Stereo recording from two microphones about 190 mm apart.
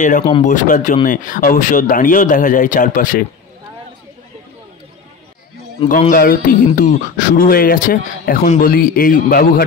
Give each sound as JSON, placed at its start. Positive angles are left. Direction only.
{"t": 0.4, "sound": "speech", "side_deg": 40}
{"t": 5.9, "sound": "speech", "side_deg": 45}